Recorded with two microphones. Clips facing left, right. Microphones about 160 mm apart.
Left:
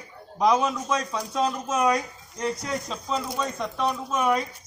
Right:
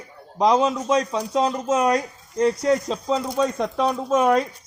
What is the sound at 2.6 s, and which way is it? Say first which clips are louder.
Speech: right 9 dB; 30° right (ahead or behind).